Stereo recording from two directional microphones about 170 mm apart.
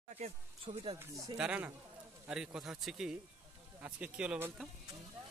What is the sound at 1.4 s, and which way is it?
Speech, 10° right (ahead or behind).